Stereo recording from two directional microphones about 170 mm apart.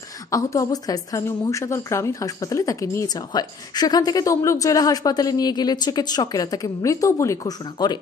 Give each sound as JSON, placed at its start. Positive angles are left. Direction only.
{"t": 0.3, "sound": "a woman's voice", "side_deg": 20}